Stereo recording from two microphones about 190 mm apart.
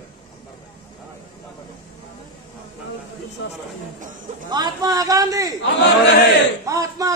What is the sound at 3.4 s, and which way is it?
Speech, 70° left (ahead or behind).